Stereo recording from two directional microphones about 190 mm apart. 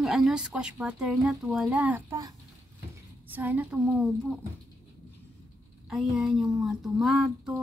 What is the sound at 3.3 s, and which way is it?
A woman's voice, 10° right (ahead or behind).